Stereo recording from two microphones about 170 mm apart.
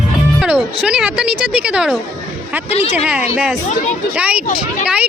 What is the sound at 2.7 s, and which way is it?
Speech, 40° left (ahead or behind).